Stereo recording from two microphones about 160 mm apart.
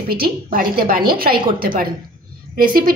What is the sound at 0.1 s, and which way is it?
A woman's voice, 65° right (ahead or behind).